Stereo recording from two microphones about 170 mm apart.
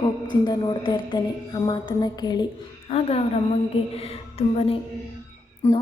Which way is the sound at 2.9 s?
35° left (ahead or behind).